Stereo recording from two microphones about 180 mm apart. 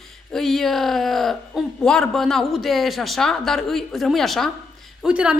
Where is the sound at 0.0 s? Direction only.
Centre (ahead or behind).